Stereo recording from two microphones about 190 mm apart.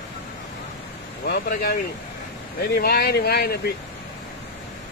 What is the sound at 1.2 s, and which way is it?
Speech, 50° left (ahead or behind).